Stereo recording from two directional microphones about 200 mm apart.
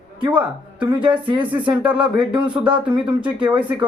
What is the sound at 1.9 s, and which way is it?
Speech, 25° right (ahead or behind).